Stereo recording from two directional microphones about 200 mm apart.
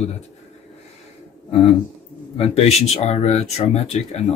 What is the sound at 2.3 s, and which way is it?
Speech, 30° left (ahead or behind).